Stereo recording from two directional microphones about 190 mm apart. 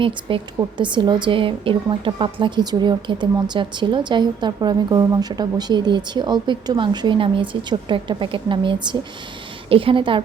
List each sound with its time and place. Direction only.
0.0 s a woman's voice: 25° right (ahead or behind)